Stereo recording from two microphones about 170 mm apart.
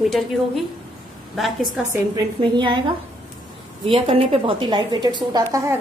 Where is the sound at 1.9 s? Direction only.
25° right (ahead or behind).